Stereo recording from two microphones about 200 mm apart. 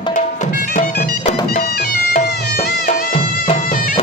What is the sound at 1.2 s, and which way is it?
Music, 25° left (ahead or behind).